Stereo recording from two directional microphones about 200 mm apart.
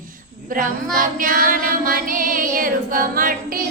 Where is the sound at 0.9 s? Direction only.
45° right (ahead or behind).